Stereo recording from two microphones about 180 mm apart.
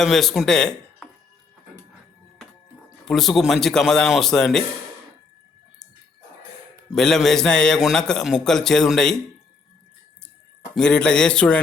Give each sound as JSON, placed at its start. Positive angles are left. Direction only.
{"t": 0.0, "sound": "a man's voice", "side_deg": 0}
{"t": 3.1, "sound": "a man's voice", "side_deg": 0}
{"t": 6.9, "sound": "a man's voice", "side_deg": 0}
{"t": 10.8, "sound": "a man's voice", "side_deg": 5}